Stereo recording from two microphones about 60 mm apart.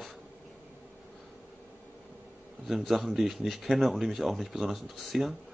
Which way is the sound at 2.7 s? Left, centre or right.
Centre.